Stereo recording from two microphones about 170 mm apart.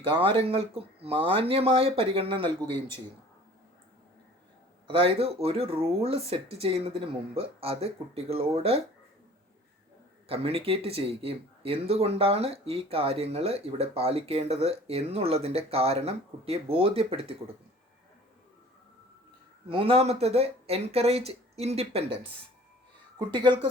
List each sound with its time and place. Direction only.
0.0 s speech: 30° right (ahead or behind)
4.9 s speech: 35° right (ahead or behind)
10.2 s speech: 35° right (ahead or behind)
19.6 s speech: 35° right (ahead or behind)
23.1 s speech: 25° right (ahead or behind)